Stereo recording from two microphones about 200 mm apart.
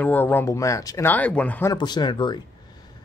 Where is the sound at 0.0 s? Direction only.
10° left (ahead or behind).